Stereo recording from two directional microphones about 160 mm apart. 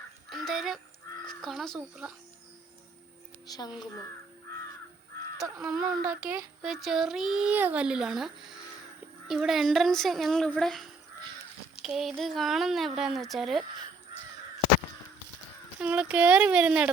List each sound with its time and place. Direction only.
0.3 s goose: centre (ahead or behind)
1.3 s speech: centre (ahead or behind)
3.4 s speech: 25° left (ahead or behind)
5.8 s speech: 60° right (ahead or behind)
6.6 s speech: centre (ahead or behind)
15.8 s speech: 10° right (ahead or behind)